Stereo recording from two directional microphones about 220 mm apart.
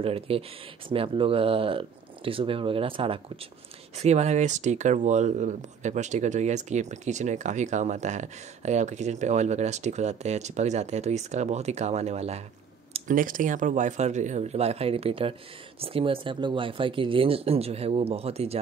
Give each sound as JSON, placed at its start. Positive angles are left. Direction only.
{"t": 0.0, "sound": "speech", "side_deg": -25}